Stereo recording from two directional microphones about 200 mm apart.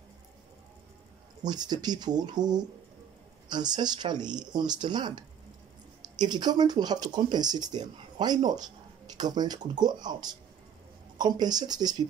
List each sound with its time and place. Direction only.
1.4 s speech: 20° right (ahead or behind)